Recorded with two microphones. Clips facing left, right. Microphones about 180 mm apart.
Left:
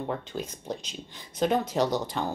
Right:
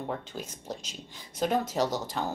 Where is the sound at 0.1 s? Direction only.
5° right (ahead or behind).